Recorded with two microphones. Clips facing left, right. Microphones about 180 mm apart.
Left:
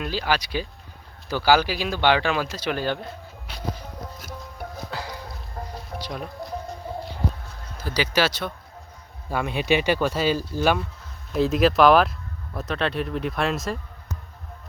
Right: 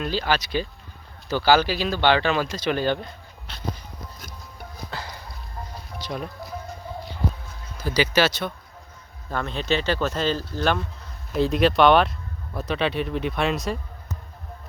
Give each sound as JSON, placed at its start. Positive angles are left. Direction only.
{"t": 0.0, "sound": "speech", "side_deg": 10}
{"t": 4.9, "sound": "a sound", "side_deg": 10}
{"t": 5.6, "sound": "music", "side_deg": 70}
{"t": 6.1, "sound": "music", "side_deg": 0}
{"t": 7.8, "sound": "speech", "side_deg": 5}